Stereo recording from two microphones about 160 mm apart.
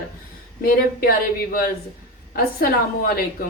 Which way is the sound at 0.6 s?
70° left (ahead or behind).